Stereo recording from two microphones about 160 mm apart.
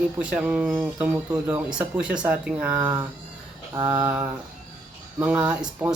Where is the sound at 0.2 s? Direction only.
10° right (ahead or behind).